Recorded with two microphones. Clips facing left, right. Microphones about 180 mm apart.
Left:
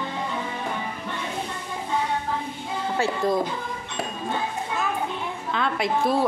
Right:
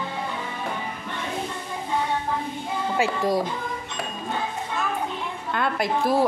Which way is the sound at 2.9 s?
15° right (ahead or behind).